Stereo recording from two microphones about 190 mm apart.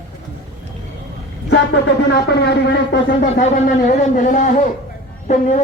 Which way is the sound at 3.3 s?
40° left (ahead or behind).